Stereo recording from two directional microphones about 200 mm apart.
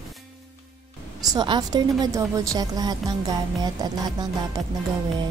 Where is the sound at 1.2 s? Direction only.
20° right (ahead or behind).